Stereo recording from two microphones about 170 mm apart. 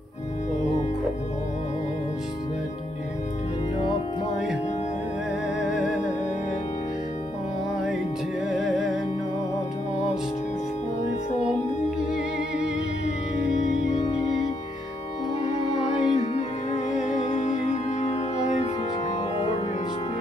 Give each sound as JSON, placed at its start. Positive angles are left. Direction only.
{"t": 5.6, "sound": "music", "side_deg": 0}
{"t": 8.5, "sound": "music", "side_deg": 0}
{"t": 13.9, "sound": "music", "side_deg": 30}
{"t": 16.1, "sound": "music", "side_deg": 40}
{"t": 19.3, "sound": "music", "side_deg": 35}